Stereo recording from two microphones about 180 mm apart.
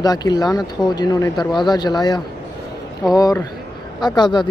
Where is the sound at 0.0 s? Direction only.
20° left (ahead or behind).